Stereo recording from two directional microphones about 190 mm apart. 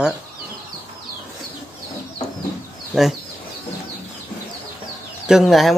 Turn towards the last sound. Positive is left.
turn(degrees=0)  # may be behind; listen again after turning